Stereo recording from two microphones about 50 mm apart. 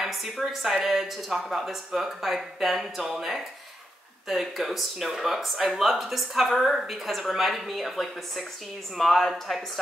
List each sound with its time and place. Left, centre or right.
0.0 s speech: centre